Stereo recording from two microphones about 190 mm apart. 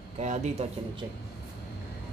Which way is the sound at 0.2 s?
35° right (ahead or behind).